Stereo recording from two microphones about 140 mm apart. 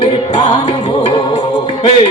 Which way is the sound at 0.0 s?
40° left (ahead or behind).